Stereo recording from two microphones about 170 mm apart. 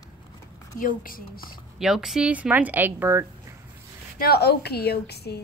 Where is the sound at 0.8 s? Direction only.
55° left (ahead or behind).